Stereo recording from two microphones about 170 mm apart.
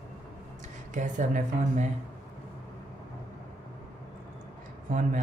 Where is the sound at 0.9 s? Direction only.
45° right (ahead or behind).